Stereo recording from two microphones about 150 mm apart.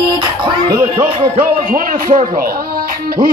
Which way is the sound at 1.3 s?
65° right (ahead or behind).